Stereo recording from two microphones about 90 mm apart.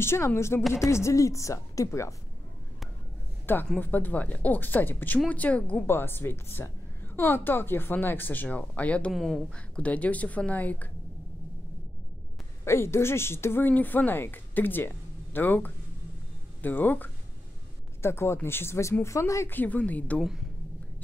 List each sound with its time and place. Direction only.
0.0 s a woman's voice: 30° left (ahead or behind)
3.4 s a woman's voice: 20° left (ahead or behind)
9.1 s speech: centre (ahead or behind)
9.5 s a woman's voice: 15° left (ahead or behind)
12.6 s a woman's voice: 30° left (ahead or behind)
19.5 s a woman's voice: 20° left (ahead or behind)
20.2 s speech: 5° right (ahead or behind)